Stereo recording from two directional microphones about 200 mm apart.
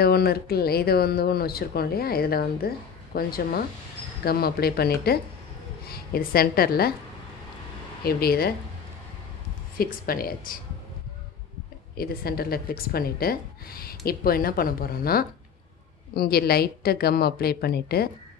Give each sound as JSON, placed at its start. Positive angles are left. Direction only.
{"t": 0.0, "sound": "speech", "side_deg": 50}
{"t": 8.0, "sound": "speech", "side_deg": 50}
{"t": 9.8, "sound": "speech", "side_deg": 45}
{"t": 12.0, "sound": "speech", "side_deg": 50}